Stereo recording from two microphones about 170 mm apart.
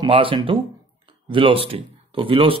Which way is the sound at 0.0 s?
30° right (ahead or behind).